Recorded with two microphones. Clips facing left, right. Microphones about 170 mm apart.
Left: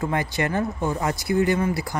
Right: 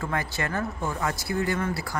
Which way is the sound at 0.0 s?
20° left (ahead or behind).